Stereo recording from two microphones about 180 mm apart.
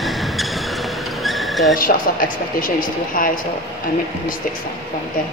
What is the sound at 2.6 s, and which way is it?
Speech, 50° left (ahead or behind).